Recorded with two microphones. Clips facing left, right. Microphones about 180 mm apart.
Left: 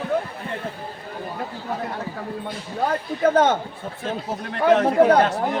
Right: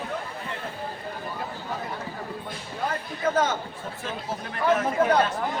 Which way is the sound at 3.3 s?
60° left (ahead or behind).